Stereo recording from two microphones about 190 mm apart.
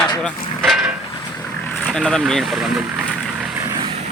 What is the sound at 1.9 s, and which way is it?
Speech, centre (ahead or behind).